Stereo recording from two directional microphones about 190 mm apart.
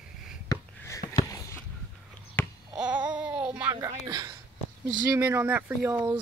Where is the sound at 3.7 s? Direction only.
15° right (ahead or behind).